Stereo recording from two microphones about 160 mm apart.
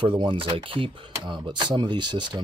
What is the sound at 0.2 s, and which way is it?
Speech, 30° right (ahead or behind).